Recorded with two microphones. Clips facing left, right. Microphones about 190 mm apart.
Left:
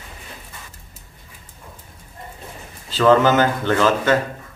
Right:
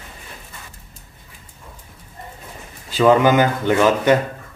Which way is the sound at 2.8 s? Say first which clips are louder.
Right 1 dB; 15° right (ahead or behind).